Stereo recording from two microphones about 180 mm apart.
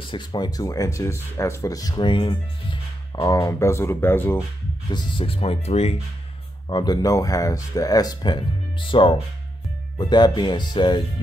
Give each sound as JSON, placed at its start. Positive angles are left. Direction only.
{"t": 0.1, "sound": "speech", "side_deg": 25}
{"t": 4.9, "sound": "speech", "side_deg": 30}
{"t": 6.7, "sound": "speech", "side_deg": 25}